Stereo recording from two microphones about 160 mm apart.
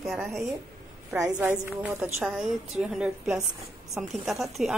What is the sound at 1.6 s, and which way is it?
Speech, 15° right (ahead or behind).